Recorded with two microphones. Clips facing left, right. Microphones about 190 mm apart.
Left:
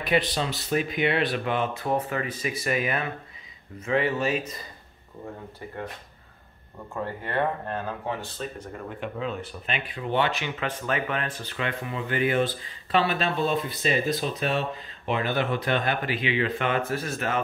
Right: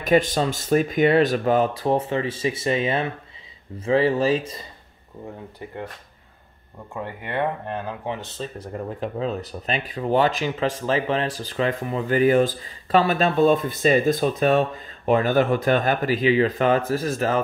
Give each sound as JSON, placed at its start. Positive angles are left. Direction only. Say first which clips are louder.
{"t": 0.0, "sound": "speech", "louder": "right 6 dB", "side_deg": -45}
{"t": 6.9, "sound": "speech", "louder": "right 1 dB", "side_deg": -15}
{"t": 8.7, "sound": "speech", "louder": "right 8 dB", "side_deg": -35}